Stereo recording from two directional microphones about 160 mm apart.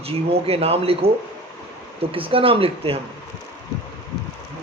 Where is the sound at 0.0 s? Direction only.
40° right (ahead or behind).